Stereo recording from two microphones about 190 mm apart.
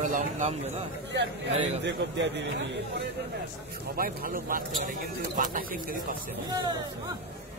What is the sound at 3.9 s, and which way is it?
Speech, 50° right (ahead or behind).